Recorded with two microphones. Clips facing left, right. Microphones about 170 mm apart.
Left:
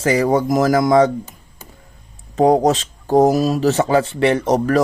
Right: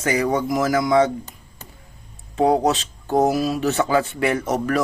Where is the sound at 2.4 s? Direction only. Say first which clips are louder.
Left 4 dB; 40° left (ahead or behind).